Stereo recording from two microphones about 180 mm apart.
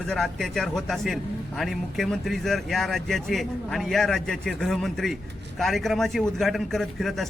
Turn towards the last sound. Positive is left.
turn(degrees=0)  # may be behind; listen again after turning